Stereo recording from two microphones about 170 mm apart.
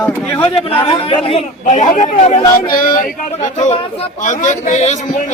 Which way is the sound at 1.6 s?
45° left (ahead or behind).